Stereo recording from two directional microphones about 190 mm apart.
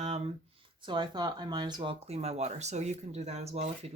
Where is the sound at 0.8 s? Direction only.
25° right (ahead or behind).